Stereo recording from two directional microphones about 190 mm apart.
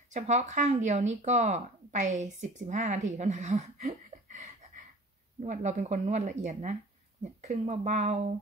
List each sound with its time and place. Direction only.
0.1 s speech: 40° right (ahead or behind)